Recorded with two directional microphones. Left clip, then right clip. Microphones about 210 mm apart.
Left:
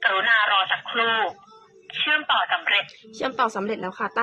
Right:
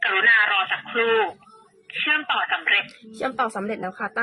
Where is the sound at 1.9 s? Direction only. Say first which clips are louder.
Left 1 dB; 10° left (ahead or behind).